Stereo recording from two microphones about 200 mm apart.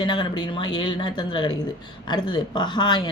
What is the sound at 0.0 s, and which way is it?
Speech, 25° left (ahead or behind).